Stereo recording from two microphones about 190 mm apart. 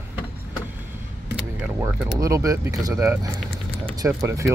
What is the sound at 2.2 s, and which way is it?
Speech, 15° right (ahead or behind).